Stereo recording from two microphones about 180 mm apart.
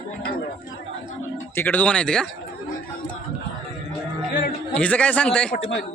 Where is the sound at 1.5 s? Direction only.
10° left (ahead or behind).